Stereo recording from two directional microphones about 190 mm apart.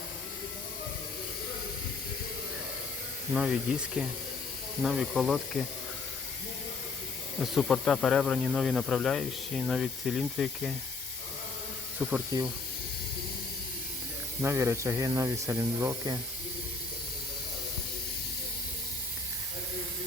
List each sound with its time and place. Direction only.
3.3 s speech: 5° right (ahead or behind)
7.3 s speech: centre (ahead or behind)
12.3 s speech: 20° right (ahead or behind)
14.4 s speech: 15° right (ahead or behind)